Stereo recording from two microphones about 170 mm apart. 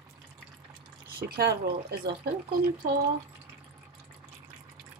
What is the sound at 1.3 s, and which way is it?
Speech, 70° right (ahead or behind).